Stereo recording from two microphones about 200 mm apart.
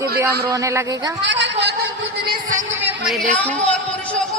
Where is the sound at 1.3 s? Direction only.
60° right (ahead or behind).